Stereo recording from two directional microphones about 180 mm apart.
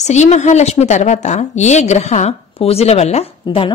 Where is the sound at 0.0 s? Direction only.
40° left (ahead or behind).